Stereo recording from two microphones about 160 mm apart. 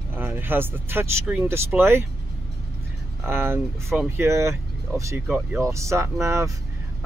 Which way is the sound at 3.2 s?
15° right (ahead or behind).